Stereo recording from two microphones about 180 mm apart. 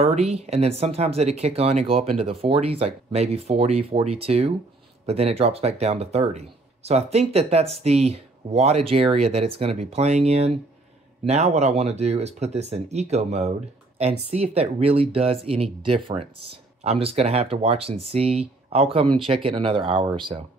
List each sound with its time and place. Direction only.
0.0 s speech: 35° right (ahead or behind)